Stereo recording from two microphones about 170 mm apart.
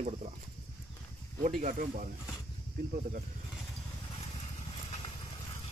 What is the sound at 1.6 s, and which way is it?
Speech, 50° right (ahead or behind).